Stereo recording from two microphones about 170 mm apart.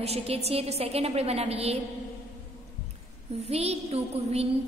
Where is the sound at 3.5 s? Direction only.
40° right (ahead or behind).